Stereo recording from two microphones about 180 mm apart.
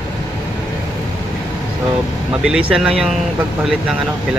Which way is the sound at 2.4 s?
5° right (ahead or behind).